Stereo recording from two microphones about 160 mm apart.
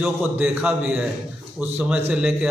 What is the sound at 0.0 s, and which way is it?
A man's voice, 5° right (ahead or behind).